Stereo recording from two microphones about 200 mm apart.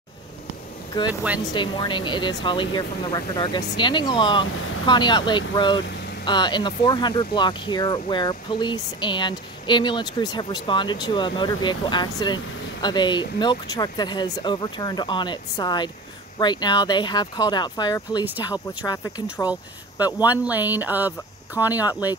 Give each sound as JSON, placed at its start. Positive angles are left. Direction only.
{"t": 1.0, "sound": "speech", "side_deg": 25}
{"t": 20.2, "sound": "speech", "side_deg": -10}